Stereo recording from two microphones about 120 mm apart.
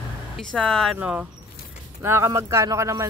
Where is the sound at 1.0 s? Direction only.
10° right (ahead or behind).